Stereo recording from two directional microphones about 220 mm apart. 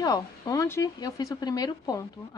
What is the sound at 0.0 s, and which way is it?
Speech, 15° left (ahead or behind).